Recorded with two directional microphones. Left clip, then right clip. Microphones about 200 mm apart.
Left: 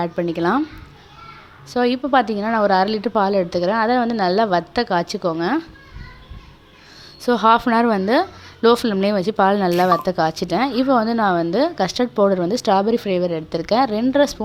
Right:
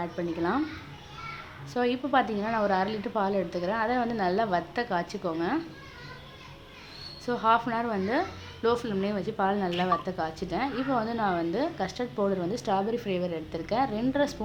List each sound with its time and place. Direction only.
0.0 s speech: 40° left (ahead or behind)
1.7 s speech: 35° left (ahead or behind)
7.2 s a woman's voice: 45° left (ahead or behind)